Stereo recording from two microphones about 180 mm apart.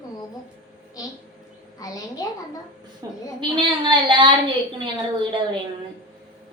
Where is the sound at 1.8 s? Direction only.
20° left (ahead or behind).